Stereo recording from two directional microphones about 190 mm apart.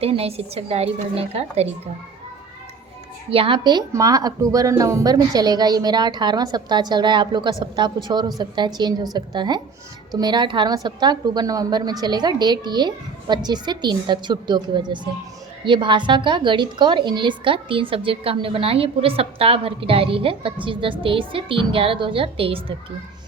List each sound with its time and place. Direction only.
0.0 s a woman's voice: 30° right (ahead or behind)
3.2 s a woman's voice: 30° right (ahead or behind)